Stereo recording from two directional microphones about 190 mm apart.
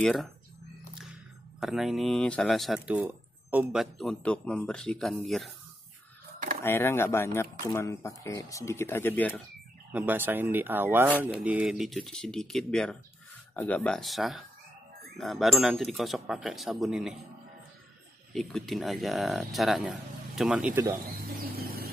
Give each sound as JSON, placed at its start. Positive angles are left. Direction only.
{"t": 0.0, "sound": "speech", "side_deg": 0}
{"t": 1.6, "sound": "speech", "side_deg": 0}
{"t": 6.6, "sound": "speech", "side_deg": 10}
{"t": 9.9, "sound": "speech", "side_deg": -10}
{"t": 18.3, "sound": "speech", "side_deg": 0}
{"t": 21.5, "sound": "a sound", "side_deg": -55}